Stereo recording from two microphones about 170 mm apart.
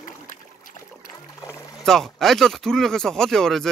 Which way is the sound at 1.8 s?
Centre (ahead or behind).